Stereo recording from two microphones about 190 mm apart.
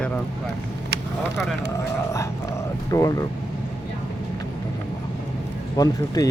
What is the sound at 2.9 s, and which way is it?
Speech, 20° left (ahead or behind).